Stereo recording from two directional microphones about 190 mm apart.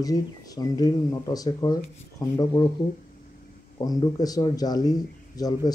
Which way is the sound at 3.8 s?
20° left (ahead or behind).